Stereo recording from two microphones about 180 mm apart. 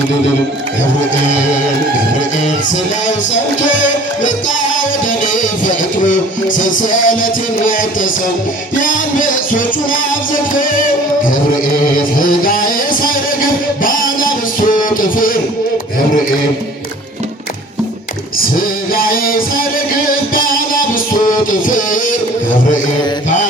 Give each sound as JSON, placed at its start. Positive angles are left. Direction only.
{"t": 3.1, "sound": "music", "side_deg": 40}
{"t": 18.5, "sound": "music", "side_deg": 55}